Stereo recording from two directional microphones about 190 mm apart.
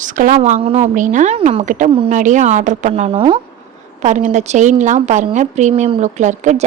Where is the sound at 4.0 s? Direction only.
40° right (ahead or behind).